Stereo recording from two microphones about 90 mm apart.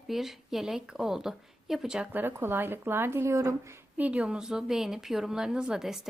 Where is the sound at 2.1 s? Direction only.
20° right (ahead or behind).